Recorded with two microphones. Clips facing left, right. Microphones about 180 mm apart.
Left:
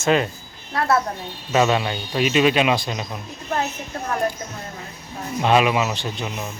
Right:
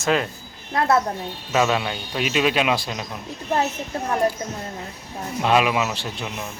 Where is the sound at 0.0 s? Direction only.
Centre (ahead or behind).